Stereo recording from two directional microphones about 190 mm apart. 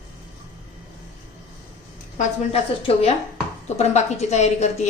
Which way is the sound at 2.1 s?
30° left (ahead or behind).